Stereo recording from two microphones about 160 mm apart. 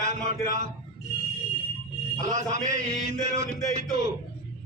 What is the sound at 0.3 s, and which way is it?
Speech, 50° right (ahead or behind).